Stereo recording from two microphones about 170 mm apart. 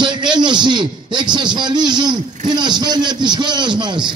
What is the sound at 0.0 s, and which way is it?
A man's voice, 25° right (ahead or behind).